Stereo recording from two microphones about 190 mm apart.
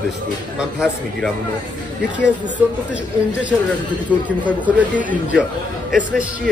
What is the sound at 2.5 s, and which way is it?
Speech, 5° right (ahead or behind).